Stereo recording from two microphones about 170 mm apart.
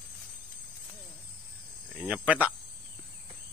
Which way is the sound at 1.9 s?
5° right (ahead or behind).